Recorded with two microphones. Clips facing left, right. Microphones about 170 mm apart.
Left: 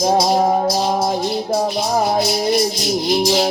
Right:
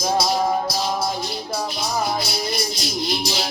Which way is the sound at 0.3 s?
40° left (ahead or behind).